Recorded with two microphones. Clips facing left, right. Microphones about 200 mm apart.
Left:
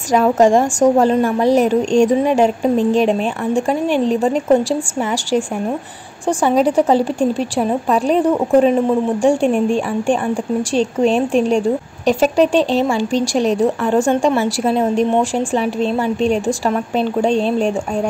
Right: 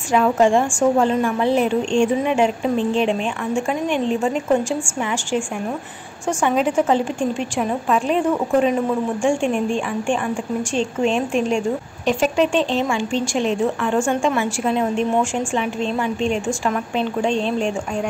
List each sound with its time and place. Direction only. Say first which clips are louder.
0.1 s a woman's voice: left 4 dB; 40° left (ahead or behind)